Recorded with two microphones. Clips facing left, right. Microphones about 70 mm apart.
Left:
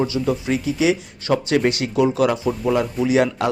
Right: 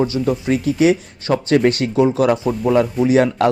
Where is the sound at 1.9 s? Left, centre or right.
Right.